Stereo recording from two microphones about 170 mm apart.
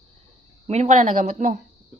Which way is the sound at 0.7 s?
45° right (ahead or behind).